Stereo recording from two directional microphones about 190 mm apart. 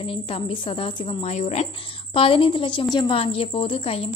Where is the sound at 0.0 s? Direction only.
30° left (ahead or behind).